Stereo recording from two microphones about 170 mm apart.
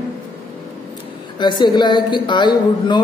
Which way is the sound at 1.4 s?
25° left (ahead or behind).